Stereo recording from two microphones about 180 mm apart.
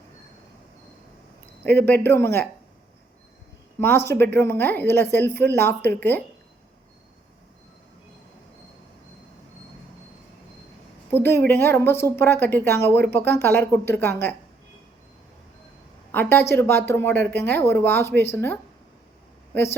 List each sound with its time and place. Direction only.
1.6 s a woman's voice: 10° left (ahead or behind)
3.8 s a woman's voice: 10° left (ahead or behind)
11.1 s a woman's voice: 15° left (ahead or behind)
16.1 s a woman's voice: 10° left (ahead or behind)